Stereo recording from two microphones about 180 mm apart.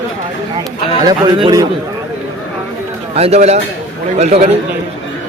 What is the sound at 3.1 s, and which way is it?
Speech, 35° right (ahead or behind).